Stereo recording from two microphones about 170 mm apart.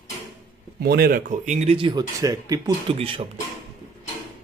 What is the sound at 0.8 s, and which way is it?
Speech, 65° right (ahead or behind).